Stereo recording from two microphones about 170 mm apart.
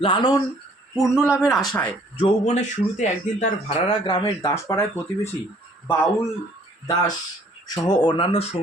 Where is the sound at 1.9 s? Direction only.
30° left (ahead or behind).